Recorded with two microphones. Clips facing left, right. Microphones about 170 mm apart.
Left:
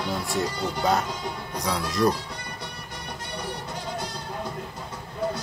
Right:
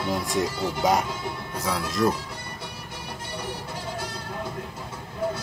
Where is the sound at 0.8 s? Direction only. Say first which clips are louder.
Right 1 dB; 10° right (ahead or behind).